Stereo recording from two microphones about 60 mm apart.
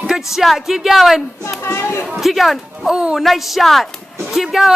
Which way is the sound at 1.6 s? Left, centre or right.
Left.